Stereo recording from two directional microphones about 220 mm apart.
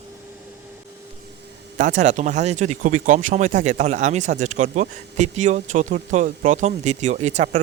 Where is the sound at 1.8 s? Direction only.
35° right (ahead or behind).